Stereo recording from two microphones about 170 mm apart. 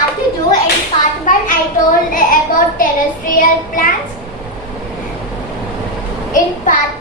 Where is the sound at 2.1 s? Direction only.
55° left (ahead or behind).